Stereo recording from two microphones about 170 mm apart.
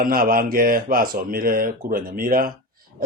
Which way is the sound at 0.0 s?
55° right (ahead or behind).